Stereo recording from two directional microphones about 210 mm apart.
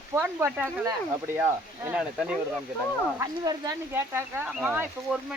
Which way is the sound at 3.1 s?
20° right (ahead or behind).